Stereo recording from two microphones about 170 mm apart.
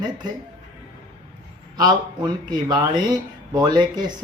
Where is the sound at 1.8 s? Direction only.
25° right (ahead or behind).